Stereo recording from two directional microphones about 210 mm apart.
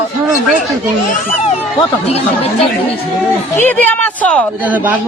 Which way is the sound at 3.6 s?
10° left (ahead or behind).